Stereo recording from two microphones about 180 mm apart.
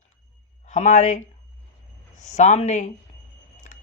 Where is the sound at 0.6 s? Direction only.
40° left (ahead or behind).